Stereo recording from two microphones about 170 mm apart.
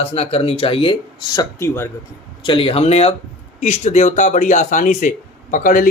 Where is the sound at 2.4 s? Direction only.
30° left (ahead or behind); by 5.8 s 55° left (ahead or behind).